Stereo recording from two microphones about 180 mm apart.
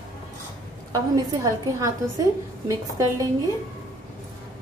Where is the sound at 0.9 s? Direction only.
20° right (ahead or behind).